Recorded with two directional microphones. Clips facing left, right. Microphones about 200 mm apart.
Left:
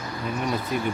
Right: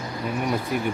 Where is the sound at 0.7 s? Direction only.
10° right (ahead or behind).